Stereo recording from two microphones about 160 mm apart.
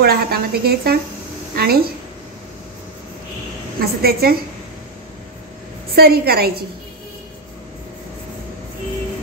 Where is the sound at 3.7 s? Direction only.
75° right (ahead or behind).